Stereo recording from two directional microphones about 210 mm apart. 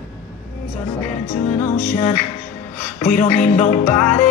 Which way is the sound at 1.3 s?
35° left (ahead or behind).